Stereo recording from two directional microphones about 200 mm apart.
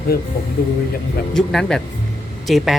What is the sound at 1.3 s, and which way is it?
Speech, 5° left (ahead or behind).